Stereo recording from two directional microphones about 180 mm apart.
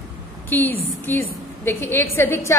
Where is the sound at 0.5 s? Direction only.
10° left (ahead or behind).